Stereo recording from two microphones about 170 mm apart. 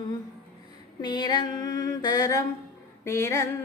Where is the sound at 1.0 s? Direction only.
25° left (ahead or behind).